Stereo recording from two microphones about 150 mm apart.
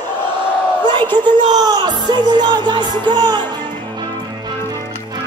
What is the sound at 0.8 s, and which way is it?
Speech, 30° right (ahead or behind).